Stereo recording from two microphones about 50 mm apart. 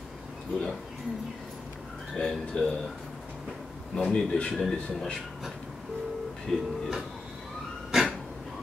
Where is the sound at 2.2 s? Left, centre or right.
Centre.